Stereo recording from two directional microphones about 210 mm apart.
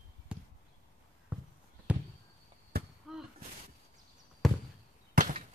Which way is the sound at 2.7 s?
50° right (ahead or behind).